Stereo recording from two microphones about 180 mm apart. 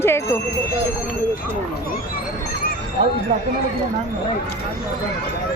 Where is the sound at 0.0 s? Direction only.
15° left (ahead or behind).